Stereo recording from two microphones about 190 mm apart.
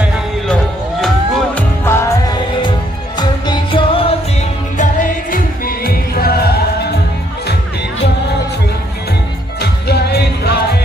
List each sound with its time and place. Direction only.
1.0 s music: 10° left (ahead or behind); by 4.2 s 30° left (ahead or behind)
5.3 s music: 50° left (ahead or behind)
9.6 s music: 60° left (ahead or behind)